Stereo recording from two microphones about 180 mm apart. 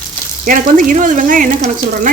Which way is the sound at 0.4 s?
50° right (ahead or behind).